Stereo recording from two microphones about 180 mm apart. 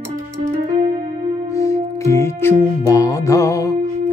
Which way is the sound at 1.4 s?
15° left (ahead or behind).